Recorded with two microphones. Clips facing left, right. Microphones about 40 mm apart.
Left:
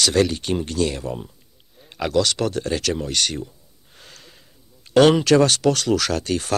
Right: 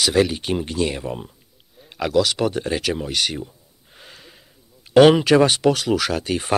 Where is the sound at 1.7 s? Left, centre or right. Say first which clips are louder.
Right 1 dB; centre.